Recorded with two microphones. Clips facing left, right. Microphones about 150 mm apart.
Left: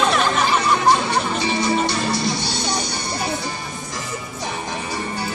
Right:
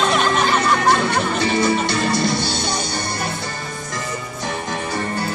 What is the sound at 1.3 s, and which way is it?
Music, 55° right (ahead or behind).